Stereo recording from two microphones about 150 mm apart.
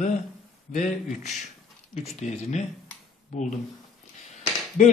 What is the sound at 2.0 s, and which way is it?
Speech, 50° left (ahead or behind).